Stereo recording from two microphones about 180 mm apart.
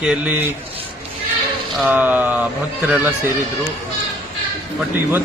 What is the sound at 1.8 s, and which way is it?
Speech, 10° right (ahead or behind).